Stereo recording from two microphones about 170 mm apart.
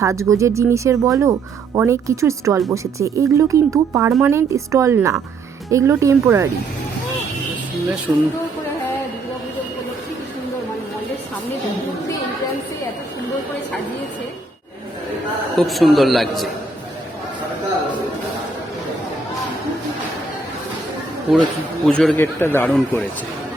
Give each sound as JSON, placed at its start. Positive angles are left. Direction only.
{"t": 0.0, "sound": "speech", "side_deg": -20}
{"t": 8.1, "sound": "a man's voice", "side_deg": -5}
{"t": 15.5, "sound": "a man's voice", "side_deg": 0}
{"t": 21.8, "sound": "speech", "side_deg": 5}